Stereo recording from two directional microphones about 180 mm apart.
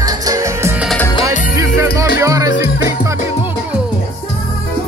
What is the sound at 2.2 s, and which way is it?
Music, 20° right (ahead or behind).